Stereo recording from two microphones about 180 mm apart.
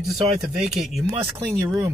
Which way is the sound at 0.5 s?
Centre (ahead or behind).